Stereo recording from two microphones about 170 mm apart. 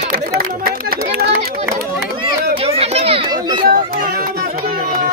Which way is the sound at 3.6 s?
55° right (ahead or behind).